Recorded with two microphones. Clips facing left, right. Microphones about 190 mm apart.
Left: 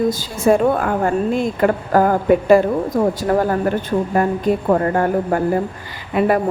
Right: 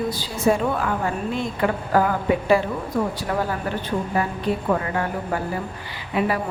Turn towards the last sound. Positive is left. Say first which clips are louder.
# left 6 dB
turn(degrees=50)  # may be behind; listen again after turning